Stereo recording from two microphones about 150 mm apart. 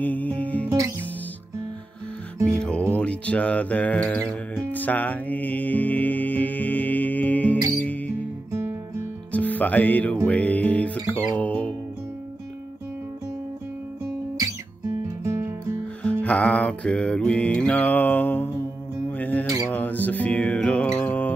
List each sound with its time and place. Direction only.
0.0 s music: 10° left (ahead or behind)
0.7 s music: 20° right (ahead or behind)
2.6 s music: 10° left (ahead or behind)
8.5 s music: 20° right (ahead or behind)
9.3 s speech: 10° left (ahead or behind)
10.2 s music: 10° left (ahead or behind)
14.4 s guitar: 20° right (ahead or behind)
16.0 s music: 10° left (ahead or behind)